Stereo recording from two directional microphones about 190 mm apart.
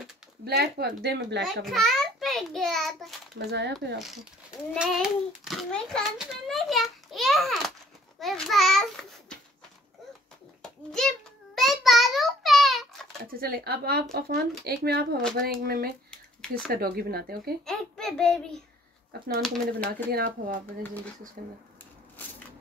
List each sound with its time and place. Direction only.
0.5 s a woman's voice: 55° right (ahead or behind)
1.6 s a child's voice: centre (ahead or behind)
3.3 s a woman's voice: 65° right (ahead or behind)
4.0 s a child's voice: centre (ahead or behind)
10.6 s a sound: 5° left (ahead or behind)
13.2 s a woman's voice: 50° right (ahead or behind)
16.1 s a sound: 5° left (ahead or behind)
16.7 s speech: 55° right (ahead or behind)
17.6 s a child's voice: 5° left (ahead or behind)
19.4 s a child's voice: 5° left (ahead or behind)
20.1 s speech: 55° right (ahead or behind)